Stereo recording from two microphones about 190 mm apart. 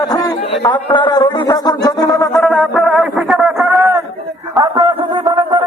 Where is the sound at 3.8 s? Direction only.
10° right (ahead or behind).